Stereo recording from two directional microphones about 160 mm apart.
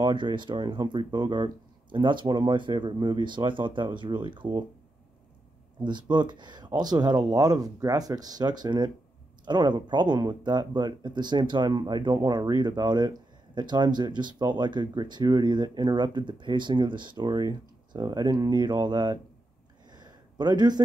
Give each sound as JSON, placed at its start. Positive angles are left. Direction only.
{"t": 0.0, "sound": "speech", "side_deg": -30}
{"t": 5.9, "sound": "speech", "side_deg": -30}
{"t": 19.9, "sound": "a sound", "side_deg": -25}